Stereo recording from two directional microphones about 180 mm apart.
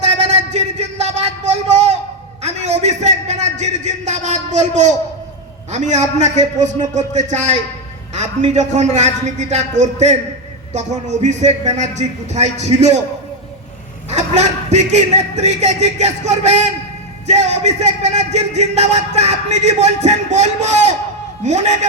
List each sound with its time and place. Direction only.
0.0 s a sound: 40° right (ahead or behind)
2.4 s a man's voice: 40° right (ahead or behind)
14.1 s speech: 40° right (ahead or behind)